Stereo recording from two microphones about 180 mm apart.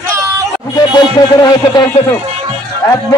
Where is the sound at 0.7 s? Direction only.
20° left (ahead or behind).